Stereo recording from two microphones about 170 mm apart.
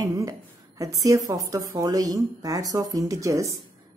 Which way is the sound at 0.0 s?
20° right (ahead or behind).